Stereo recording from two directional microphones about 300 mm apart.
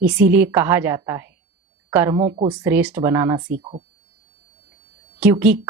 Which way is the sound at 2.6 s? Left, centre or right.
Centre.